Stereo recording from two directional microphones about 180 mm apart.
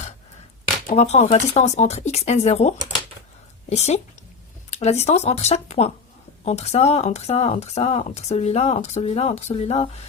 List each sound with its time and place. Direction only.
0.9 s speech: 40° left (ahead or behind)